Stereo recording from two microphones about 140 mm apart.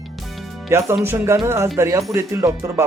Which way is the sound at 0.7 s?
20° right (ahead or behind).